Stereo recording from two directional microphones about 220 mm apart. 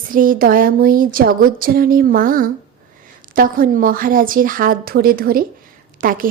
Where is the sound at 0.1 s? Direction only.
40° right (ahead or behind).